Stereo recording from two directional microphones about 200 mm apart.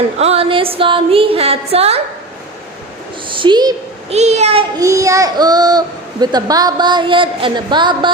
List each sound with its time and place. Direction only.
0.2 s music: 30° right (ahead or behind)
3.3 s a woman's voice: 25° right (ahead or behind)
4.1 s a child's voice: 35° right (ahead or behind)
4.7 s a child's voice: 15° right (ahead or behind)